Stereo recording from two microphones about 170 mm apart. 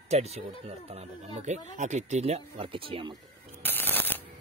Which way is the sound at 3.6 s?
10° left (ahead or behind).